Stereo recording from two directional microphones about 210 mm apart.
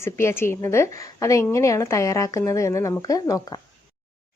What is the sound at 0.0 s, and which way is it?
A woman's voice, 10° left (ahead or behind).